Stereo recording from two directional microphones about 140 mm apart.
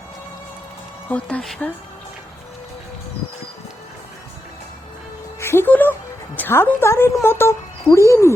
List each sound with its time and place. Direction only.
1.0 s speech: 10° left (ahead or behind)
5.4 s music: 15° left (ahead or behind)